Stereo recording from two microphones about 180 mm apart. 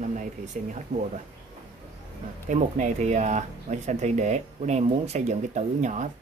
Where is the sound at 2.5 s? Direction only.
45° right (ahead or behind).